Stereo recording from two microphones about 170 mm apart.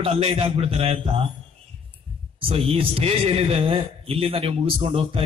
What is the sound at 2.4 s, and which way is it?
A man's voice, 30° right (ahead or behind).